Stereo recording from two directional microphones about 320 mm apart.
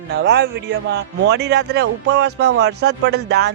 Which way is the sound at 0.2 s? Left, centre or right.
Right.